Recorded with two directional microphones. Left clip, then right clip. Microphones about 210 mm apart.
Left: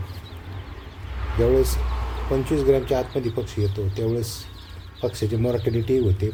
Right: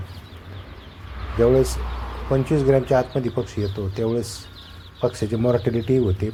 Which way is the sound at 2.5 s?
15° right (ahead or behind).